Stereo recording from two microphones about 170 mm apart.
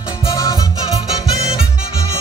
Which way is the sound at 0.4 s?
20° left (ahead or behind).